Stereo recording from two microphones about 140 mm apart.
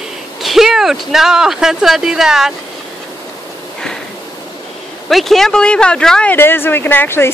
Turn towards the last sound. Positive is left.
turn(degrees=15)  # may be behind; listen again after turning